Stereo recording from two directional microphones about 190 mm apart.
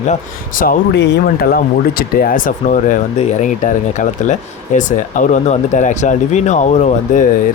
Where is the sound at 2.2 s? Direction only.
45° left (ahead or behind).